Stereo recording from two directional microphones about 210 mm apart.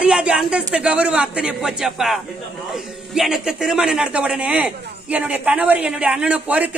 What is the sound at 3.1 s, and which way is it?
A man's voice, 5° right (ahead or behind).